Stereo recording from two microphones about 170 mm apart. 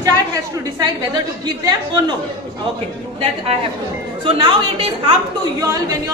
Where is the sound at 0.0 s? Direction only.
20° right (ahead or behind).